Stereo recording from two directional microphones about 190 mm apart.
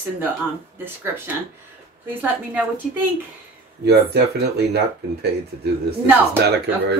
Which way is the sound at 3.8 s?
60° right (ahead or behind).